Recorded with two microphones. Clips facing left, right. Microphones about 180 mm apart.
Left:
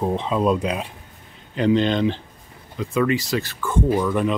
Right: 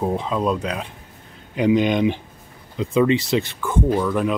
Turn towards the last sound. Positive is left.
turn(degrees=0)  # may be behind; listen again after turning